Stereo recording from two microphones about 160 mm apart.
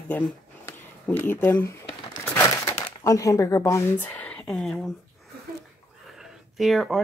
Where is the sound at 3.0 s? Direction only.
20° left (ahead or behind); by 4.7 s 5° left (ahead or behind).